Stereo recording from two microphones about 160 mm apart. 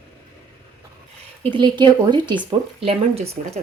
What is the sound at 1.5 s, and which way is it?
Speech, 30° right (ahead or behind).